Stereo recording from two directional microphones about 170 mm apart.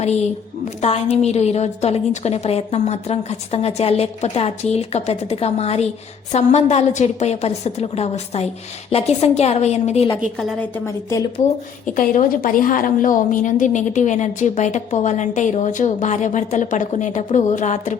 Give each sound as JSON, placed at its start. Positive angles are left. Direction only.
{"t": 0.8, "sound": "a woman's voice", "side_deg": 35}
{"t": 11.9, "sound": "a woman's voice", "side_deg": 55}